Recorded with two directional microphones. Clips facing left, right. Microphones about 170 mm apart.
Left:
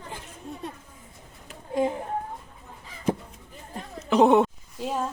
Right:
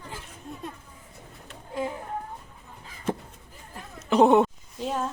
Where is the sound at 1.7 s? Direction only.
20° left (ahead or behind).